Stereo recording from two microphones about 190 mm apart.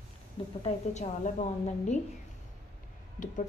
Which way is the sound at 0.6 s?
35° left (ahead or behind).